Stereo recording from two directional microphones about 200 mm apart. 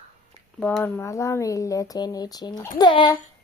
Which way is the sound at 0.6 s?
10° left (ahead or behind).